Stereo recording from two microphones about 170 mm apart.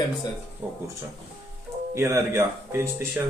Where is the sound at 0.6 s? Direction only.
10° right (ahead or behind).